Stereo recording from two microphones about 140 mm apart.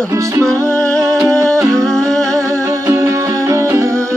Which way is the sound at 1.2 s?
20° right (ahead or behind).